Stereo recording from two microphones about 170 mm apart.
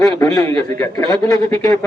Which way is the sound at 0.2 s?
15° left (ahead or behind).